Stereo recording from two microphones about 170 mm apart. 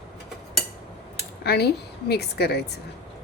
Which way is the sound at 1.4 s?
70° left (ahead or behind).